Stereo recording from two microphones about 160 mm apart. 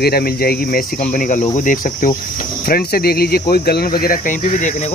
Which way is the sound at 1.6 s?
55° left (ahead or behind).